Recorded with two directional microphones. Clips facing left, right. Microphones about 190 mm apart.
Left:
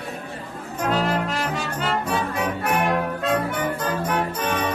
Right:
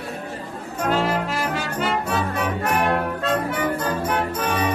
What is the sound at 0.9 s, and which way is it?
Music, 5° right (ahead or behind).